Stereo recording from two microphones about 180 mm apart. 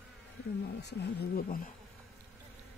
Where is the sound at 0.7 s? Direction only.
65° left (ahead or behind).